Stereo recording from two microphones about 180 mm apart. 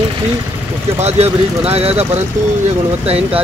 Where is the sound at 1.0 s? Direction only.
35° right (ahead or behind).